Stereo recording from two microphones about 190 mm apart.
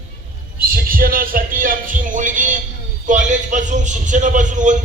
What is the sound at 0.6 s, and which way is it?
Music, 50° right (ahead or behind).